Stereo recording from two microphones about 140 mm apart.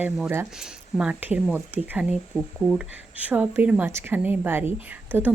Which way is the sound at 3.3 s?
10° right (ahead or behind).